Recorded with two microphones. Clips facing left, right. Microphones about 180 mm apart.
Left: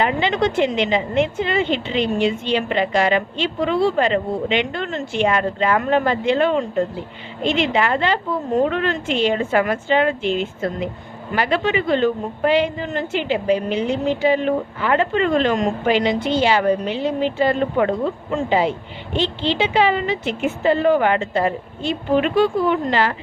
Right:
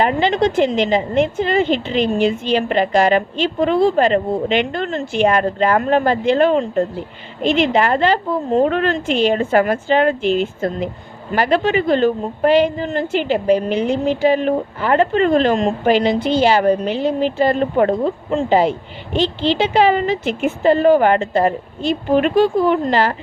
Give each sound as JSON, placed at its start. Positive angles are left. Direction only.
{"t": 0.0, "sound": "a woman's voice", "side_deg": -40}